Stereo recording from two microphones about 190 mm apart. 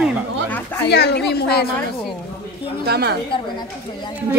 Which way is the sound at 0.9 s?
60° left (ahead or behind).